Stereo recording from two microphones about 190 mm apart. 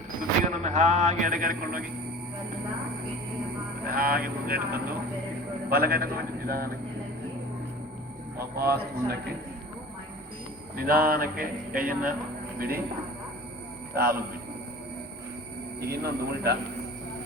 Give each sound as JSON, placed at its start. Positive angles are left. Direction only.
{"t": 0.6, "sound": "a sound", "side_deg": -40}
{"t": 3.8, "sound": "speech", "side_deg": -50}
{"t": 8.5, "sound": "speech", "side_deg": -55}
{"t": 10.8, "sound": "speech", "side_deg": -50}
{"t": 13.9, "sound": "a man's voice", "side_deg": -50}
{"t": 15.8, "sound": "speech", "side_deg": -55}